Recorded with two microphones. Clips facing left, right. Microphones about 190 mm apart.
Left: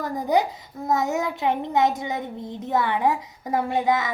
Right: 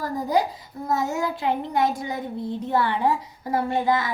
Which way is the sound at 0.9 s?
20° left (ahead or behind).